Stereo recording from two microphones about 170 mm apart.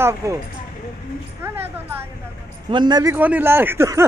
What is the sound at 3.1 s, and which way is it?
Speech, 10° right (ahead or behind).